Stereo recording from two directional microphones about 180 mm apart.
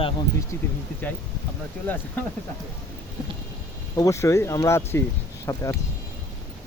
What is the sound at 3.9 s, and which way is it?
Speech, 20° left (ahead or behind).